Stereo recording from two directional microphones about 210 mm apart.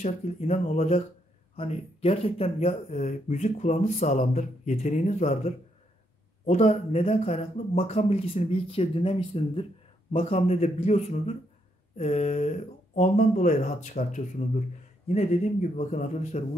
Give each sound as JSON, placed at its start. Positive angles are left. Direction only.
{"t": 0.0, "sound": "speech", "side_deg": 30}
{"t": 15.7, "sound": "speech", "side_deg": 35}